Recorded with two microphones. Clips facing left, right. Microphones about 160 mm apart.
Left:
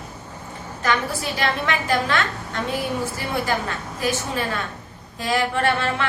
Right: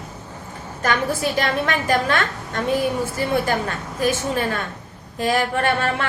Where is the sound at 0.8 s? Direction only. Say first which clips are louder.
Right 3 dB; 50° right (ahead or behind).